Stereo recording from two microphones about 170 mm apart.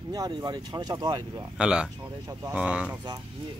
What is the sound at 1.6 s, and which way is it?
Speech, 5° right (ahead or behind).